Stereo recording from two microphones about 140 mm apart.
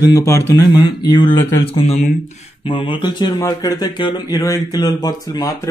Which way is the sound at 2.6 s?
30° left (ahead or behind).